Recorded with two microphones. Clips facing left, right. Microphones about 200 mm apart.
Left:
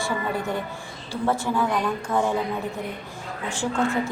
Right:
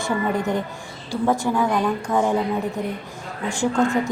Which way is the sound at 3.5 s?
10° right (ahead or behind).